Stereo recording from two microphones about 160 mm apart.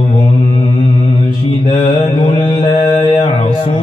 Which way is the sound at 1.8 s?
30° left (ahead or behind).